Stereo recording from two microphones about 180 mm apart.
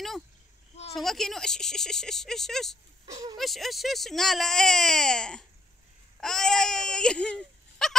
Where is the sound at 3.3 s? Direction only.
Centre (ahead or behind).